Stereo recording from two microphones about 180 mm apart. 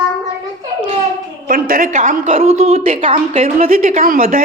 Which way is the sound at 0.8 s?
45° right (ahead or behind).